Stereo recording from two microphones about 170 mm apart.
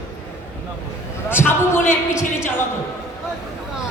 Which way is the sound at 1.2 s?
15° left (ahead or behind).